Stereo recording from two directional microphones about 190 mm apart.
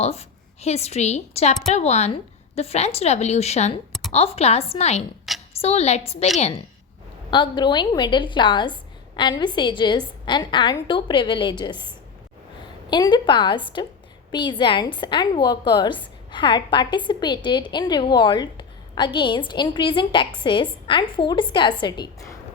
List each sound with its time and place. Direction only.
0.0 s a woman's voice: 35° left (ahead or behind)